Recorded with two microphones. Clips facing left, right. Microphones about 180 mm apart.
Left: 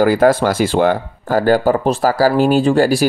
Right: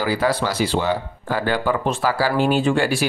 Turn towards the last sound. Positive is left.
turn(degrees=40)  # may be behind; listen again after turning